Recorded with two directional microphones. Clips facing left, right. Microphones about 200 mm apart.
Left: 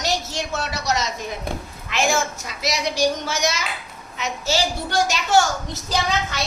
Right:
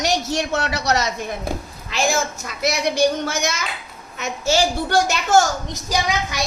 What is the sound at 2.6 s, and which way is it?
A woman's voice, 55° right (ahead or behind).